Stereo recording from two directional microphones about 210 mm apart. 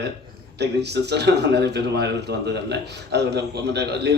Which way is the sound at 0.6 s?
55° right (ahead or behind).